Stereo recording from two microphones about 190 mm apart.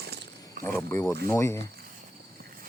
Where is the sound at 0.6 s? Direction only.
15° left (ahead or behind).